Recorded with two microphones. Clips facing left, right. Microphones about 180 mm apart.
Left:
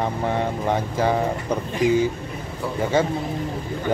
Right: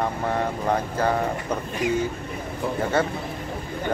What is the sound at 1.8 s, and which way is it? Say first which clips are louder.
Speech: left 6 dB; 90° left.